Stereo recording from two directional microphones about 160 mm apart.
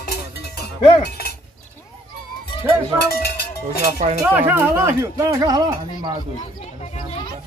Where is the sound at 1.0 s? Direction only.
80° left.